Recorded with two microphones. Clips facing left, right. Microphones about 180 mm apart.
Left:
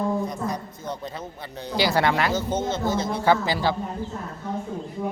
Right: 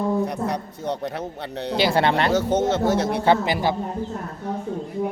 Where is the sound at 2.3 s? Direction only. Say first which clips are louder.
Right 5 dB; 70° right (ahead or behind).